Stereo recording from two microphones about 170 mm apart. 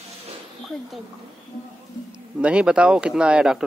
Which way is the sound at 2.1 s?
5° right (ahead or behind).